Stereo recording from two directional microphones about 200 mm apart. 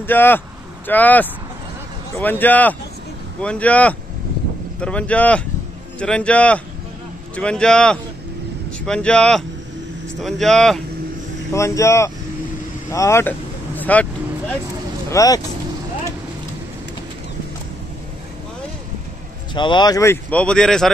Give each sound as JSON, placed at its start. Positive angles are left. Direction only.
{"t": 0.0, "sound": "a man's voice", "side_deg": 10}
{"t": 11.5, "sound": "speech", "side_deg": 15}
{"t": 15.0, "sound": "speech", "side_deg": 15}
{"t": 19.5, "sound": "speech", "side_deg": 25}